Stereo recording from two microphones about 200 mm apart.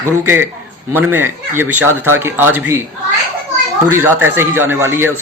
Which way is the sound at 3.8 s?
10° right (ahead or behind).